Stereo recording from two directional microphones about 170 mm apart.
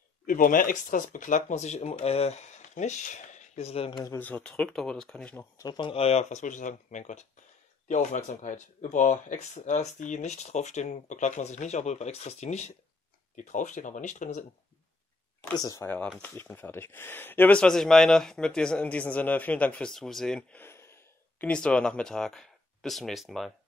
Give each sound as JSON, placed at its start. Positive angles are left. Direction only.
{"t": 0.3, "sound": "speech", "side_deg": 55}
{"t": 4.0, "sound": "speech", "side_deg": 15}
{"t": 5.6, "sound": "speech", "side_deg": 25}
{"t": 15.5, "sound": "speech", "side_deg": 20}